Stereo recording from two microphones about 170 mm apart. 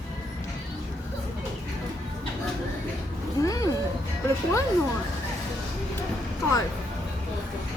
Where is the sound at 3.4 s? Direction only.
20° left (ahead or behind).